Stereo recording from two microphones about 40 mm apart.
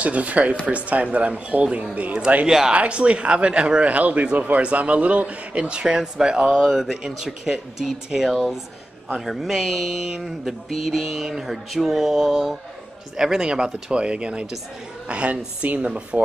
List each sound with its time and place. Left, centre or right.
0.0 s a man's voice: right
2.4 s speech: centre
2.7 s a man's voice: right
6.6 s mantra: centre
6.9 s speech: centre
10.7 s mantra: centre
13.2 s speech: centre